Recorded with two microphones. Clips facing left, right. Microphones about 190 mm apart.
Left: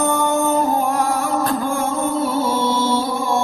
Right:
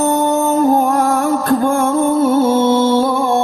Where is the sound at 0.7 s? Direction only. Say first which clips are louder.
Right 5 dB; 45° right (ahead or behind).